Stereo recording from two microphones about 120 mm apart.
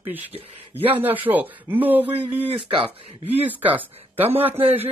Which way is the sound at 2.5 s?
45° right (ahead or behind).